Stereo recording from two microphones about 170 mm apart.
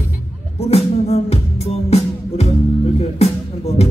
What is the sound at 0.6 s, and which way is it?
Music, 40° left (ahead or behind).